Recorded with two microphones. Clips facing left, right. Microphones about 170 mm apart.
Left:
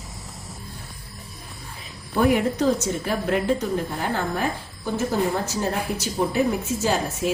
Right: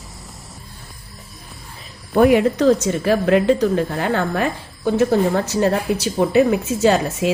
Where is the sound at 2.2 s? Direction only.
85° right.